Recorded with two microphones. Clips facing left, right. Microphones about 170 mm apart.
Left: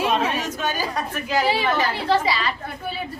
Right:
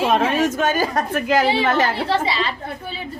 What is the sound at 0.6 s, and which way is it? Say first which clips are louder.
Speech: right 6 dB; 50° right (ahead or behind).